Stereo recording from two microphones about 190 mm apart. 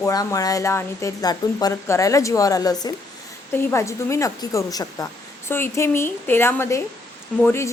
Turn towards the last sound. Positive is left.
turn(degrees=15)  # may be behind; listen again after turning